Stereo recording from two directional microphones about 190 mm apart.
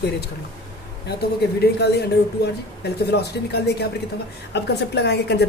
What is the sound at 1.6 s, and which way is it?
A woman's voice, 60° left (ahead or behind).